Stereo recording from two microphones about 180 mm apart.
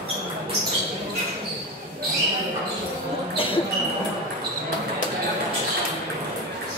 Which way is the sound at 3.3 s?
30° left (ahead or behind).